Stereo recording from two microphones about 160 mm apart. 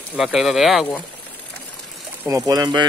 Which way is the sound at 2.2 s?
20° right (ahead or behind).